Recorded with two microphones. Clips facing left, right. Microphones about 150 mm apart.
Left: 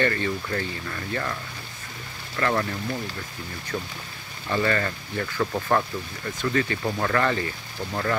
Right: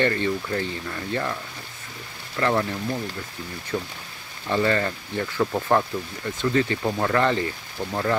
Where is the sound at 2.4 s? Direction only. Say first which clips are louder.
Right 2 dB; 15° right (ahead or behind).